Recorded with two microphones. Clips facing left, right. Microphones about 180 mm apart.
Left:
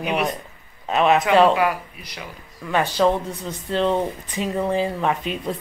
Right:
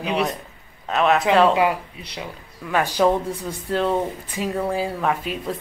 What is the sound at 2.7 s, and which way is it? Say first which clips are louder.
Speech: even; 10° right (ahead or behind).